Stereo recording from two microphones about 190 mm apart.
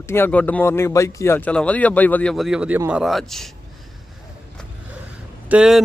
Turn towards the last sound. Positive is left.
turn(degrees=-5)  # may be behind; listen again after turning